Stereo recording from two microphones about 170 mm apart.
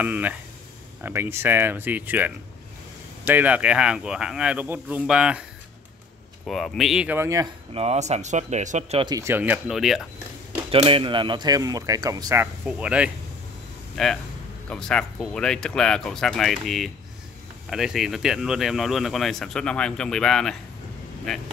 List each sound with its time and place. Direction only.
0.0 s speech: 10° right (ahead or behind)
6.4 s speech: centre (ahead or behind); by 7.4 s 15° right (ahead or behind)
7.7 s speech: 40° right (ahead or behind)
9.0 s speech: 20° right (ahead or behind); by 10.0 s centre (ahead or behind)
10.7 s speech: 35° right (ahead or behind)
12.6 s speech: 5° right (ahead or behind)